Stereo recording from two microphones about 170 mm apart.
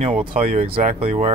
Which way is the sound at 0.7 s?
60° right (ahead or behind).